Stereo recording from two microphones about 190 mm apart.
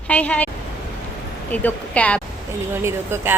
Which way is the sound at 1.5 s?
10° left (ahead or behind).